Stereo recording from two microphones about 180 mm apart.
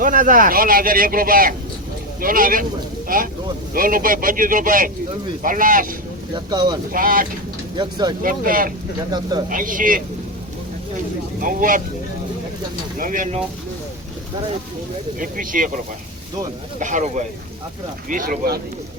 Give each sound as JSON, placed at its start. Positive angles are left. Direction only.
{"t": 0.0, "sound": "speech", "side_deg": -50}
{"t": 6.3, "sound": "speech", "side_deg": -25}
{"t": 6.9, "sound": "speech", "side_deg": -50}
{"t": 7.8, "sound": "speech", "side_deg": -25}
{"t": 8.2, "sound": "speech", "side_deg": -50}
{"t": 11.3, "sound": "speech", "side_deg": -50}
{"t": 13.0, "sound": "speech", "side_deg": -50}
{"t": 15.2, "sound": "speech", "side_deg": -50}
{"t": 16.8, "sound": "speech", "side_deg": -45}